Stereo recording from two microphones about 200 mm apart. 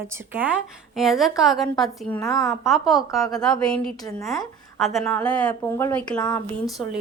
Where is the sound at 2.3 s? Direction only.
20° left (ahead or behind).